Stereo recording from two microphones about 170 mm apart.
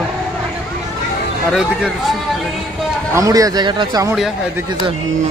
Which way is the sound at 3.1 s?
20° right (ahead or behind).